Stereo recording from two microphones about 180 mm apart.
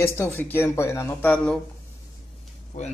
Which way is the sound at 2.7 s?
45° left (ahead or behind).